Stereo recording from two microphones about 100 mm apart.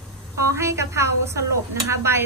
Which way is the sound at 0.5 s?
30° right (ahead or behind).